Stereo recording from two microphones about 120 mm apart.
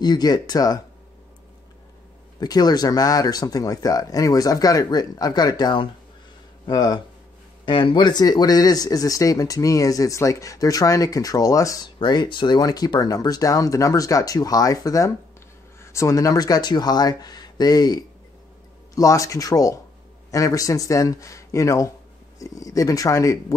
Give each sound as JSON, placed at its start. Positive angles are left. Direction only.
{"t": 0.0, "sound": "speech", "side_deg": 35}
{"t": 2.4, "sound": "speech", "side_deg": 35}